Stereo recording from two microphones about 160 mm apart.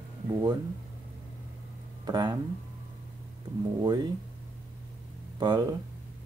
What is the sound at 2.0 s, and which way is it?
Speech, 25° right (ahead or behind).